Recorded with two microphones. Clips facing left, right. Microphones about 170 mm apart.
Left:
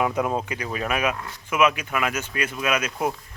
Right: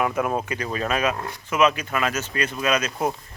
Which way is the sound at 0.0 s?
15° left (ahead or behind).